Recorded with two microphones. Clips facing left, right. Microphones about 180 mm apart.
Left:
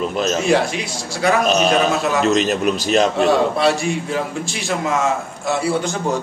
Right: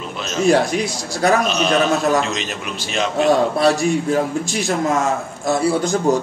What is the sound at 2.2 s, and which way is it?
Speech, 40° left (ahead or behind).